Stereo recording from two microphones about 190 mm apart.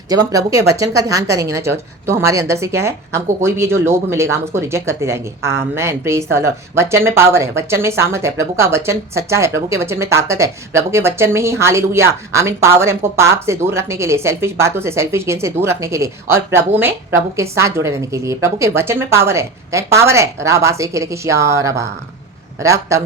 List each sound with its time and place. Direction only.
0.1 s speech: 20° right (ahead or behind)